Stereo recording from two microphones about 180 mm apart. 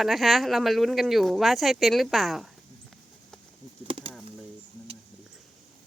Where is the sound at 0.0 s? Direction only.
Centre (ahead or behind).